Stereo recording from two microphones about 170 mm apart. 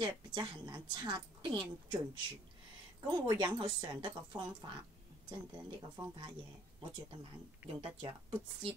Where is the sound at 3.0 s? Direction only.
25° right (ahead or behind).